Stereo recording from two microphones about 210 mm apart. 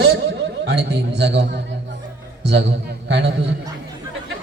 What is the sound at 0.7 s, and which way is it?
Speech, 55° right (ahead or behind).